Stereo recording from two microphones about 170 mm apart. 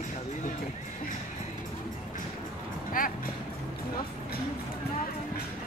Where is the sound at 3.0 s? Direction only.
55° left (ahead or behind).